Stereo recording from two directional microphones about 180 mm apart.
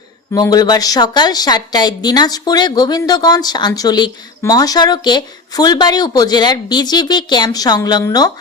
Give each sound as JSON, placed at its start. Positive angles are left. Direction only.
{"t": 0.3, "sound": "a woman's voice", "side_deg": 20}